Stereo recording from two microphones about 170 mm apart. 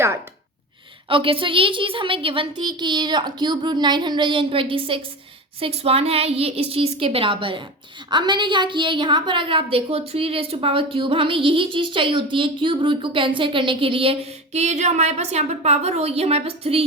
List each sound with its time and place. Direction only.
1.0 s a woman's voice: 30° right (ahead or behind)